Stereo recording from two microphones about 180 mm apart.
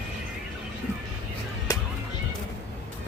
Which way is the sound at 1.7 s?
20° left (ahead or behind).